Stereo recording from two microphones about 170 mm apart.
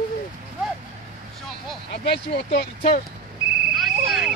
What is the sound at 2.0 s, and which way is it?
Speech, 70° left (ahead or behind).